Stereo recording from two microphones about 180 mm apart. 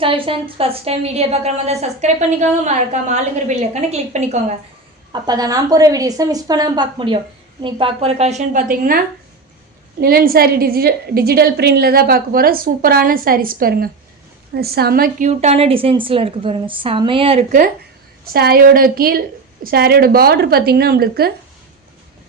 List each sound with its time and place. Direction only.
0.0 s a woman's voice: 30° right (ahead or behind)
5.1 s a woman's voice: 20° right (ahead or behind); by 9.0 s 50° right (ahead or behind)
10.0 s a woman's voice: 55° right (ahead or behind)
15.3 s a woman's voice: 35° right (ahead or behind)
18.3 s a woman's voice: 60° right (ahead or behind)